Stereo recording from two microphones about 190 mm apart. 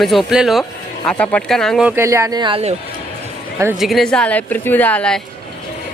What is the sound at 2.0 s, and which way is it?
Speech, 15° right (ahead or behind).